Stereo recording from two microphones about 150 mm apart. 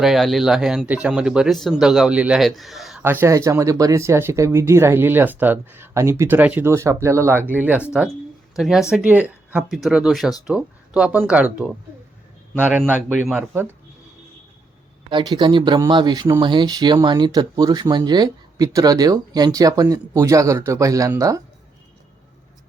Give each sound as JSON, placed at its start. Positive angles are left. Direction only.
{"t": 0.0, "sound": "speech", "side_deg": 0}
{"t": 3.0, "sound": "speech", "side_deg": -15}
{"t": 15.1, "sound": "speech", "side_deg": -30}